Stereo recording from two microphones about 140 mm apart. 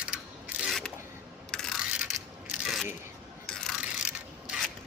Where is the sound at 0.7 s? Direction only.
Centre (ahead or behind).